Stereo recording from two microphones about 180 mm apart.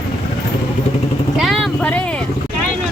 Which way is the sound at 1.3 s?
Centre (ahead or behind).